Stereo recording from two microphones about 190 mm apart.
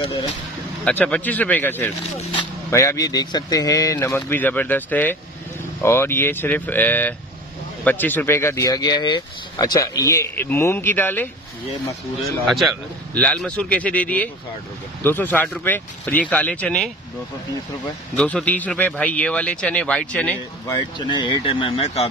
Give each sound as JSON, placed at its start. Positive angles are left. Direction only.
{"t": 0.8, "sound": "speech", "side_deg": 5}
{"t": 12.4, "sound": "speech", "side_deg": 0}
{"t": 18.1, "sound": "speech", "side_deg": 5}
{"t": 20.7, "sound": "speech", "side_deg": 20}